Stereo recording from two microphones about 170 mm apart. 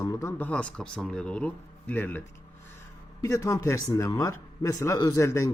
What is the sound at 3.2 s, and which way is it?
A man's voice, 20° left (ahead or behind).